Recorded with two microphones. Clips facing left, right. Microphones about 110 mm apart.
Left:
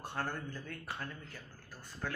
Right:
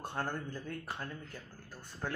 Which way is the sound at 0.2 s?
25° right (ahead or behind).